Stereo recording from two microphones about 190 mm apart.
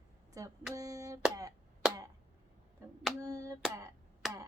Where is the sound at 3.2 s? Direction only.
15° right (ahead or behind).